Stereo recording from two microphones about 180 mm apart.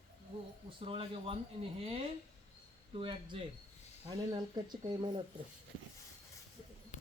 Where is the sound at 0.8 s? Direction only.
30° right (ahead or behind).